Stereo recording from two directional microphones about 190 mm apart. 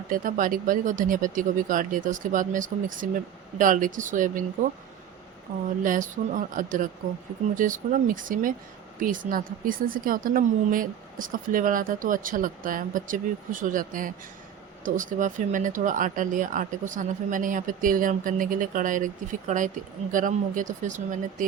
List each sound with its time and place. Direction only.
0.1 s a woman's voice: 45° right (ahead or behind)